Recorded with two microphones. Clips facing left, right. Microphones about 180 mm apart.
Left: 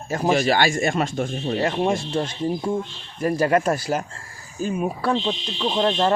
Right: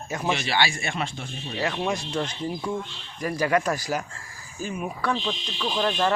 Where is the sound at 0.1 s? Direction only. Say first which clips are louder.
Left 7 dB; 40° left (ahead or behind).